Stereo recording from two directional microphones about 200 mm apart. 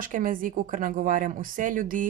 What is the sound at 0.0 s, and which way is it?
Speech, 45° right (ahead or behind).